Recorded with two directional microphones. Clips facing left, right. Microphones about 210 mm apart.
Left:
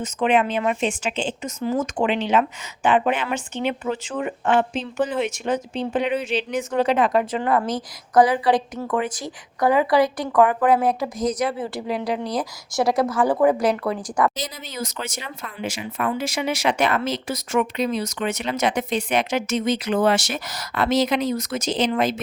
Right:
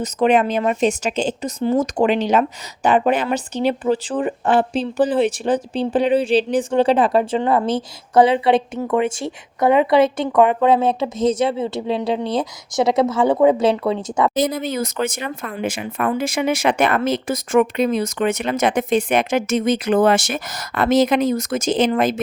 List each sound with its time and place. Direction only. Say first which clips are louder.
0.0 s speech: right 4 dB; 40° right (ahead or behind); by 14.3 s 25° right (ahead or behind)
14.3 s speech: right 11 dB; 55° right (ahead or behind)